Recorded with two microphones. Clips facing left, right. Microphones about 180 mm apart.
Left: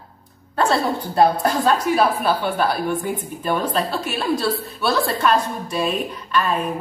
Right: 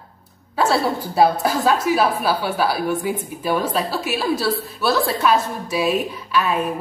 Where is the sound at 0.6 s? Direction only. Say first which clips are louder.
Right 1 dB; 5° right (ahead or behind).